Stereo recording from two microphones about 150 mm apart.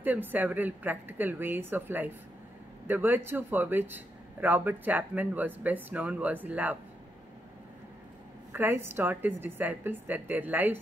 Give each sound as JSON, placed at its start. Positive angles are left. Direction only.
{"t": 0.0, "sound": "speech", "side_deg": -10}
{"t": 8.5, "sound": "speech", "side_deg": -15}